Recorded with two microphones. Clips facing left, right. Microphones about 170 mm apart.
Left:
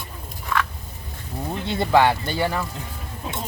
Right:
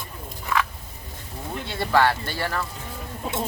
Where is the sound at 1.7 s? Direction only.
20° left (ahead or behind).